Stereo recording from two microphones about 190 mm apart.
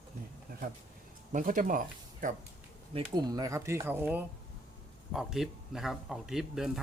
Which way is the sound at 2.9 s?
20° right (ahead or behind).